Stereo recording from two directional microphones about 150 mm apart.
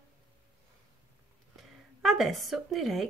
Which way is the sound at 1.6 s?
Centre (ahead or behind).